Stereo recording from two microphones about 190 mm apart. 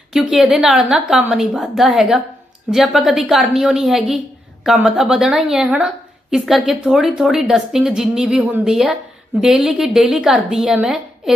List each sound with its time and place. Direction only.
0.1 s speech: centre (ahead or behind)